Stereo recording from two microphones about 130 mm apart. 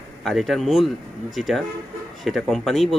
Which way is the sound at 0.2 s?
Centre (ahead or behind).